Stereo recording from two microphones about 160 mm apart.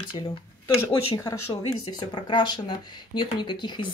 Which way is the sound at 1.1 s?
25° left (ahead or behind).